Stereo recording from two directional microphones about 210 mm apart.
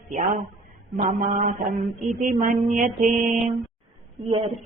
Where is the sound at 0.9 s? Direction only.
35° right (ahead or behind).